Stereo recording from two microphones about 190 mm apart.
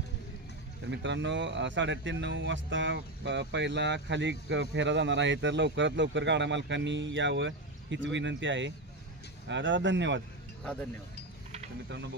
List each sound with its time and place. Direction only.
0.8 s speech: 70° right (ahead or behind)
10.6 s speech: 5° left (ahead or behind)